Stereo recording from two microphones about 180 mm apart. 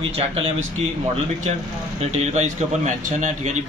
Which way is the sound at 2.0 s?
40° right (ahead or behind).